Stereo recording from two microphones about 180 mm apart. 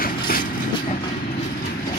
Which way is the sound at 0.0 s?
55° left (ahead or behind).